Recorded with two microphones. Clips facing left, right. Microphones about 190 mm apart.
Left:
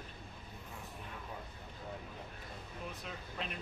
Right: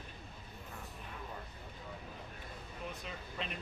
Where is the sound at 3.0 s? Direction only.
Centre (ahead or behind).